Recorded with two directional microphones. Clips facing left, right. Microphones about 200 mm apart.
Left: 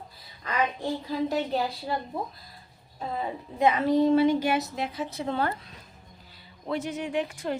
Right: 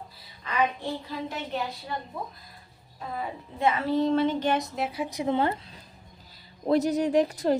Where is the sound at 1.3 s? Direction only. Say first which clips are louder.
Left 4 dB; 35° left (ahead or behind).